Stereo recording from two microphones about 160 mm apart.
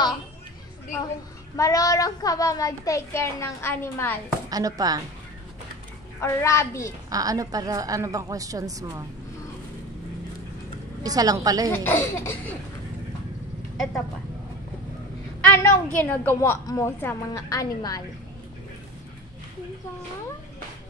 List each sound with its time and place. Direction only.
1.6 s a child's voice: 20° left (ahead or behind)
4.5 s a woman's voice: 20° right (ahead or behind)
6.2 s speech: 15° left (ahead or behind)
7.1 s a woman's voice: 20° right (ahead or behind)
11.0 s a woman's voice: 25° right (ahead or behind)
11.7 s speech: 15° left (ahead or behind)
15.4 s a child's voice: 15° left (ahead or behind)